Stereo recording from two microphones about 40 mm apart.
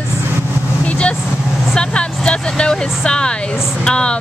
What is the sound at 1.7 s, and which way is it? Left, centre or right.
Speech, left.